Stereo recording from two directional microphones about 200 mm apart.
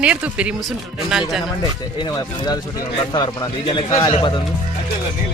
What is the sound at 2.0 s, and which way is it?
Speech, 20° left (ahead or behind).